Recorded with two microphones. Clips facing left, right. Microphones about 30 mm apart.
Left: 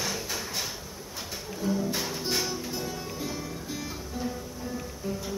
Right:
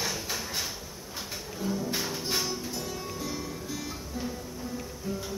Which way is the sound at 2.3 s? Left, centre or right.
Centre.